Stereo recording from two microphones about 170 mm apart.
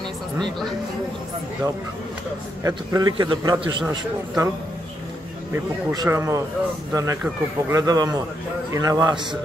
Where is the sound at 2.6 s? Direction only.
20° right (ahead or behind).